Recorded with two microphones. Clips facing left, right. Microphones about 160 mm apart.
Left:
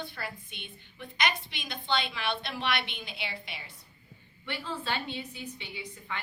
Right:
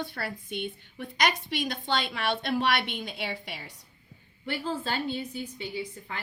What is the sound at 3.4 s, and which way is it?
Speech, 65° right (ahead or behind).